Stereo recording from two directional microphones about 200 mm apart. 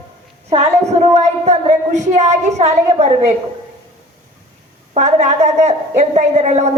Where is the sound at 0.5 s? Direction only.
35° right (ahead or behind).